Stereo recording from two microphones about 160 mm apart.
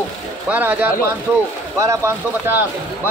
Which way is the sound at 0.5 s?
10° right (ahead or behind).